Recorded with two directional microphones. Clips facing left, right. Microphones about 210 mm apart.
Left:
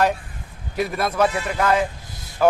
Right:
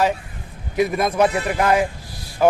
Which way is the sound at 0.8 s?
15° right (ahead or behind).